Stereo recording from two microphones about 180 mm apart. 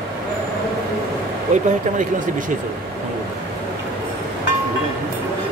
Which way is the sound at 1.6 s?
45° right (ahead or behind).